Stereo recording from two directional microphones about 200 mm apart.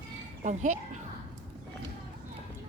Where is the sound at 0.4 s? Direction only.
40° right (ahead or behind).